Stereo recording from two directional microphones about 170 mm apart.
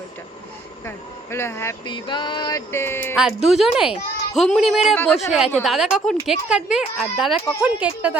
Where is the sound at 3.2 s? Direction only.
5° right (ahead or behind).